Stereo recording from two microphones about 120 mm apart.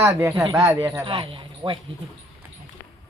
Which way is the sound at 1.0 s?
45° right (ahead or behind).